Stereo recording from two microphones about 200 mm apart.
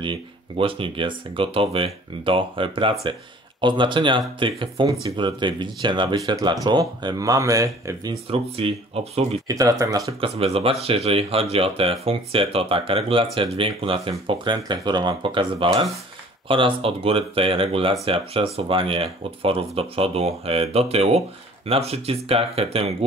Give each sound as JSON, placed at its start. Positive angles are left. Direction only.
{"t": 0.0, "sound": "speech", "side_deg": -25}
{"t": 9.5, "sound": "speech", "side_deg": -15}
{"t": 10.3, "sound": "speech", "side_deg": -30}